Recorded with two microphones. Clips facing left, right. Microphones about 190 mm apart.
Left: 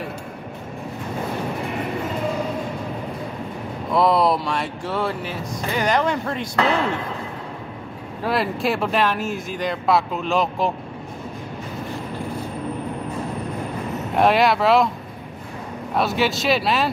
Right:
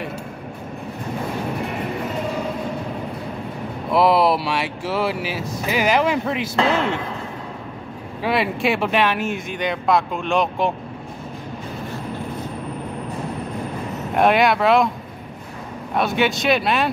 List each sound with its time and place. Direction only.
3.9 s a sound: 5° right (ahead or behind)
4.5 s speech: 5° right (ahead or behind)
6.6 s speech: 25° right (ahead or behind)
8.2 s speech: centre (ahead or behind)
14.1 s speech: centre (ahead or behind)
15.9 s speech: centre (ahead or behind)